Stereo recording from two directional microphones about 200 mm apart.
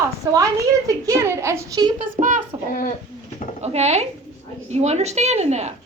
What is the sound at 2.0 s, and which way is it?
Speech, 40° right (ahead or behind).